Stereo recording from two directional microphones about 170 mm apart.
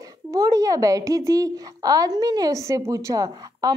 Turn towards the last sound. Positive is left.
turn(degrees=-20)  # may be behind; listen again after turning